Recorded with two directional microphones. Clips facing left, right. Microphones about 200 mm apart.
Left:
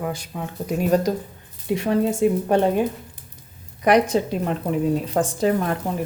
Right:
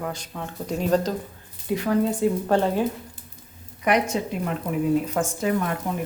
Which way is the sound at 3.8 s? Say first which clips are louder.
Left 5 dB; 35° left (ahead or behind).